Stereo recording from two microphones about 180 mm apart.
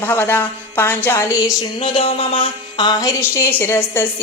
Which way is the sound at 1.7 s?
30° left (ahead or behind).